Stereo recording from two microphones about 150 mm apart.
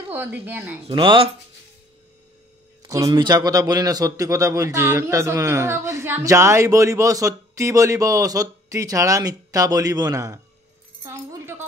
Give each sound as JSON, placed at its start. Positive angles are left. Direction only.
{"t": 0.1, "sound": "speech", "side_deg": -15}
{"t": 0.8, "sound": "speech", "side_deg": -35}
{"t": 2.8, "sound": "a man's voice", "side_deg": -25}